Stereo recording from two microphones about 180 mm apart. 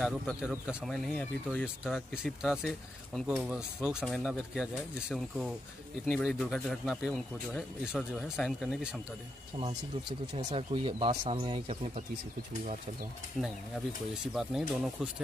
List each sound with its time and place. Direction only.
0.0 s speech: centre (ahead or behind)
6.0 s speech: centre (ahead or behind)
10.3 s speech: 30° right (ahead or behind)
14.2 s speech: 5° right (ahead or behind)